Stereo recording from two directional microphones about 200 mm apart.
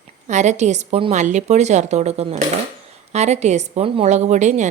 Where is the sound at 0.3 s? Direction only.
35° right (ahead or behind).